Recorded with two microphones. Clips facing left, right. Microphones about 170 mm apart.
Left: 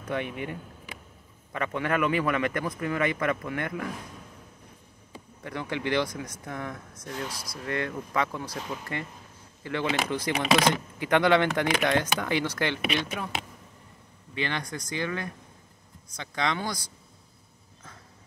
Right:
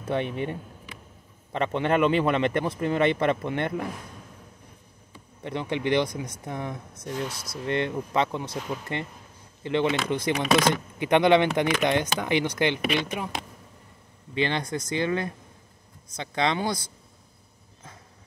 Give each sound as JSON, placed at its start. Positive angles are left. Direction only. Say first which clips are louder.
{"t": 0.0, "sound": "a man's voice", "louder": "right 4 dB", "side_deg": -25}
{"t": 5.4, "sound": "a man's voice", "louder": "right 4 dB", "side_deg": -20}
{"t": 14.3, "sound": "a man's voice", "louder": "right 5 dB", "side_deg": -25}